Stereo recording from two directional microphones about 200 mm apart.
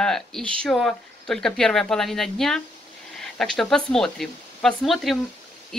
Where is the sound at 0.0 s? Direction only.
5° left (ahead or behind).